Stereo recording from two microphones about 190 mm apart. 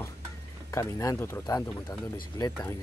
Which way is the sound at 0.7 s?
15° left (ahead or behind).